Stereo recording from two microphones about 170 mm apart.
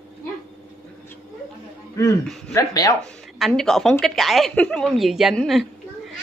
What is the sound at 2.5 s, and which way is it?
Speech, 20° left (ahead or behind).